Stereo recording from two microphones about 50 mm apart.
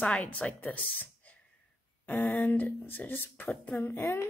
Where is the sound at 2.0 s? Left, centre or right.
Left.